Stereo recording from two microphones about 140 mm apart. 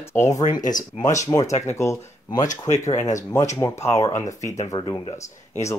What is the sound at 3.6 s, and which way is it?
Speech, 20° left (ahead or behind).